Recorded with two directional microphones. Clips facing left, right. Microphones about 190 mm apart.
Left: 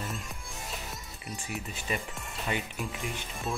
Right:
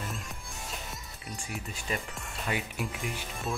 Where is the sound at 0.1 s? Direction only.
Centre (ahead or behind).